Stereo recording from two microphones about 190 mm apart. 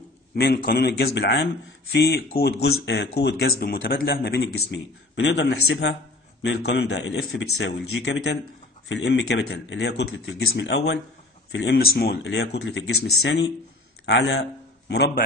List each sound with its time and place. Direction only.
0.4 s speech: 55° left (ahead or behind)
11.5 s a man's voice: 55° left (ahead or behind)